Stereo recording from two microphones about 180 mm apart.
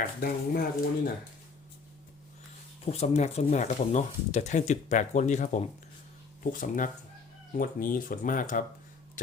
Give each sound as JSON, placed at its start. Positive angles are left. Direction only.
{"t": 0.0, "sound": "speech", "side_deg": 55}
{"t": 2.8, "sound": "speech", "side_deg": 35}
{"t": 9.2, "sound": "a sound", "side_deg": 45}